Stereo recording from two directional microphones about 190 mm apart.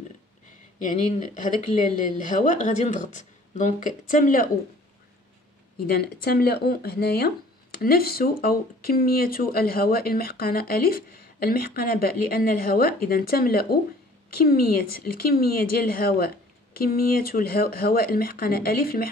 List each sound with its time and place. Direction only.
0.8 s speech: 45° left (ahead or behind)
5.8 s speech: 55° left (ahead or behind)